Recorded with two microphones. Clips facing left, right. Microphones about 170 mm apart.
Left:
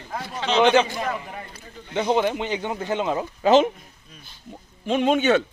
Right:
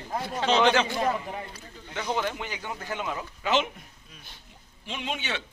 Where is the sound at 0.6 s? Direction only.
20° left (ahead or behind); by 3.7 s 35° left (ahead or behind).